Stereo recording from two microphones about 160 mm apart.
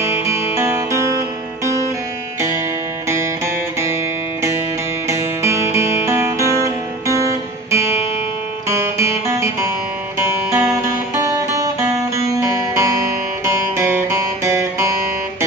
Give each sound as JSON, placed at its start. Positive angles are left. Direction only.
{"t": 0.0, "sound": "music", "side_deg": -20}
{"t": 3.8, "sound": "music", "side_deg": -15}